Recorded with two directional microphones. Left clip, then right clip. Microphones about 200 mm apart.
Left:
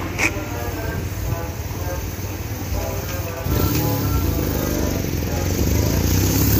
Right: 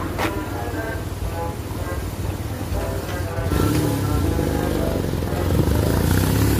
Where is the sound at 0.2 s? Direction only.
10° right (ahead or behind).